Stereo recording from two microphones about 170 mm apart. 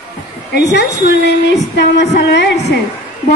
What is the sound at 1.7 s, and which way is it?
Music, 90° left.